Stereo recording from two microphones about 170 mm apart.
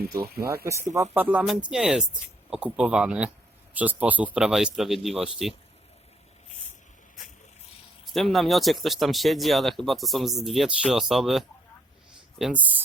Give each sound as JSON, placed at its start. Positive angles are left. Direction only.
{"t": 0.4, "sound": "speech", "side_deg": -15}
{"t": 8.1, "sound": "speech", "side_deg": 0}